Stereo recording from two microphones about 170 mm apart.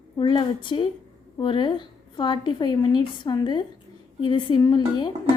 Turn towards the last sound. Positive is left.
turn(degrees=25)  # may be behind; listen again after turning